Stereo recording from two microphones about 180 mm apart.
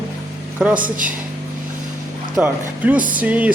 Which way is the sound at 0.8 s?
50° right (ahead or behind).